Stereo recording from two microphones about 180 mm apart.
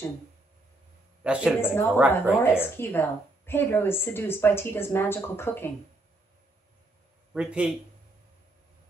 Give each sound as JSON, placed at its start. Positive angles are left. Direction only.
{"t": 1.2, "sound": "speech", "side_deg": -5}
{"t": 1.6, "sound": "a woman's voice", "side_deg": 10}
{"t": 2.0, "sound": "speech", "side_deg": -10}
{"t": 2.6, "sound": "a woman's voice", "side_deg": 10}
{"t": 7.3, "sound": "speech", "side_deg": -5}